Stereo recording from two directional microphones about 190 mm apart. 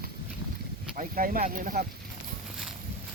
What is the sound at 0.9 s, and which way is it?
Speech, 45° right (ahead or behind).